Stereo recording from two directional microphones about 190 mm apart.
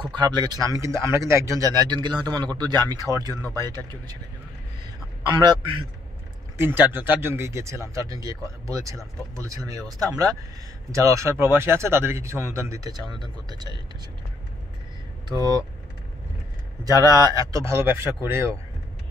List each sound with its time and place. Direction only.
0.1 s speech: 25° right (ahead or behind)
3.4 s a man's voice: 15° left (ahead or behind)
5.4 s speech: 20° right (ahead or behind)
6.9 s speech: 10° right (ahead or behind)
15.2 s speech: 20° right (ahead or behind)
16.8 s speech: 20° right (ahead or behind)